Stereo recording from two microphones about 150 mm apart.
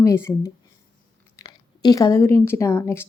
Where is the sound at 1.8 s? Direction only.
25° left (ahead or behind).